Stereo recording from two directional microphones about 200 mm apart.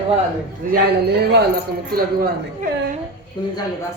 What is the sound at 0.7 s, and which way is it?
Speech, 55° right (ahead or behind).